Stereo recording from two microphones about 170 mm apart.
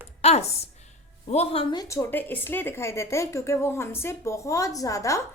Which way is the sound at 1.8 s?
15° left (ahead or behind).